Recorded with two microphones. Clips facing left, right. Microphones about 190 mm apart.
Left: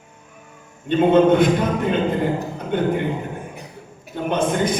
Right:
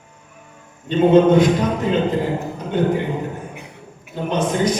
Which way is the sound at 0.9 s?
55° left (ahead or behind).